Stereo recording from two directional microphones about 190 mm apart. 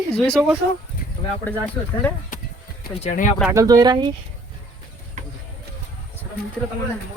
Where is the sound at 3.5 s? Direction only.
20° right (ahead or behind).